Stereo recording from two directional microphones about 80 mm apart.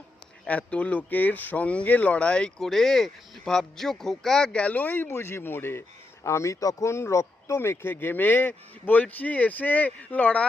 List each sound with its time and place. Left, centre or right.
0.4 s speech: centre
6.2 s speech: left; by 10.4 s centre